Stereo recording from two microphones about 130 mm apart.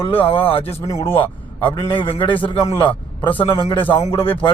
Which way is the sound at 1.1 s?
40° left (ahead or behind).